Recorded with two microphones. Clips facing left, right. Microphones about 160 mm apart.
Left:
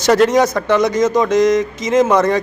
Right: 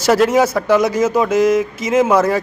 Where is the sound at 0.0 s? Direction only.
5° right (ahead or behind).